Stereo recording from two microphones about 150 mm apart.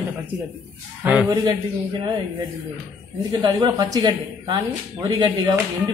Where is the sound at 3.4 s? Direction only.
25° right (ahead or behind).